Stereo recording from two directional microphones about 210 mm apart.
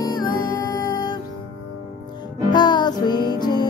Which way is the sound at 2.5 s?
20° left (ahead or behind).